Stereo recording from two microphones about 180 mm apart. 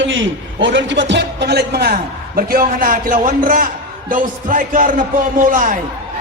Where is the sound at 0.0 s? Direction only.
90° right; by 5.8 s 45° right (ahead or behind).